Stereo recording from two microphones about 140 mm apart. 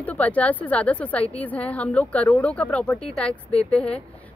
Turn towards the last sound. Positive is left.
turn(degrees=5)  # may be behind; listen again after turning